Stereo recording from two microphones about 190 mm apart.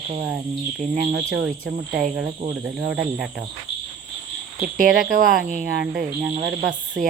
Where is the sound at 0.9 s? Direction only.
60° right (ahead or behind); by 1.4 s 80° right.